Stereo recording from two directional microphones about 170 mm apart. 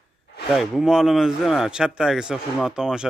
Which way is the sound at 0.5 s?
Centre (ahead or behind).